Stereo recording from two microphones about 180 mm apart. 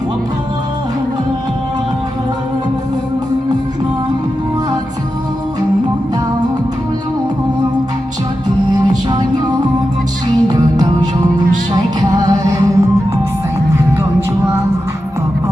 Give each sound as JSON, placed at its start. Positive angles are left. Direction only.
{"t": 8.7, "sound": "music", "side_deg": -20}
{"t": 10.5, "sound": "music", "side_deg": -20}